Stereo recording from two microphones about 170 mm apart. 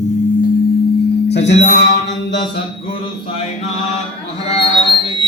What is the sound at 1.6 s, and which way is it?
Mantra, 90° left.